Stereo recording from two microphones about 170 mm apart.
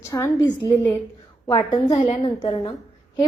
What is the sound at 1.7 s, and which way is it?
A woman's voice, 40° left (ahead or behind).